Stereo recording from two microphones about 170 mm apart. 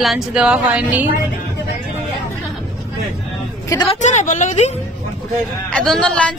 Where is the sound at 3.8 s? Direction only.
45° left (ahead or behind).